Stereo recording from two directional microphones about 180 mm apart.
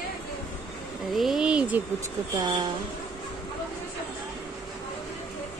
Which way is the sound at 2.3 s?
20° right (ahead or behind).